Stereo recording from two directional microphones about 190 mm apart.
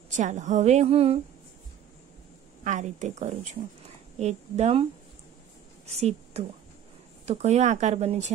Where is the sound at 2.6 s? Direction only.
40° right (ahead or behind).